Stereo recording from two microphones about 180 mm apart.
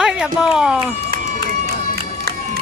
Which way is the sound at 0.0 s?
5° right (ahead or behind).